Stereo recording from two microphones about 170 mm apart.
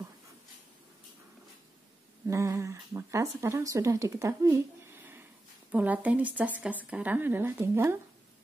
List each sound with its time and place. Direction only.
2.2 s speech: 20° right (ahead or behind)